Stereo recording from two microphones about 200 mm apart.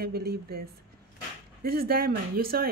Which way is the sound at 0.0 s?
50° right (ahead or behind).